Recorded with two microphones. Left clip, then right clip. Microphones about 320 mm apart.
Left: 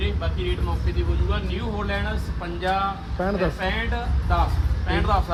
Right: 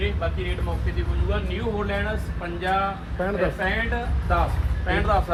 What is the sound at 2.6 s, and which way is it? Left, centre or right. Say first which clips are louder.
A man's voice: even; left.